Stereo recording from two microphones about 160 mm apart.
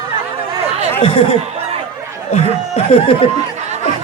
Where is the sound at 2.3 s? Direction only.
40° left (ahead or behind).